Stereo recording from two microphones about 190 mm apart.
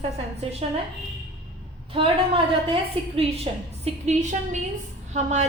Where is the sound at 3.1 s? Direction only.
30° right (ahead or behind).